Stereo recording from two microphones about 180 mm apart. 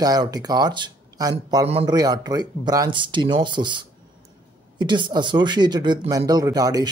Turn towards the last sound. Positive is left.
turn(degrees=-20)  # may be behind; listen again after turning